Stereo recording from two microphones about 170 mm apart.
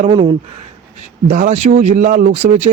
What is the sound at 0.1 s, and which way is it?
Speech, 25° right (ahead or behind).